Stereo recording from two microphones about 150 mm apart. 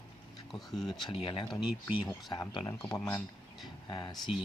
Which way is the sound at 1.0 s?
35° left (ahead or behind).